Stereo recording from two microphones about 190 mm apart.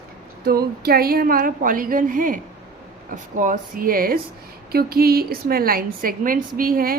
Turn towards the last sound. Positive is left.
turn(degrees=-50)  # may be behind; listen again after turning